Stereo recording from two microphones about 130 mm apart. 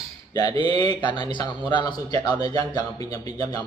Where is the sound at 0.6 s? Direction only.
35° left (ahead or behind).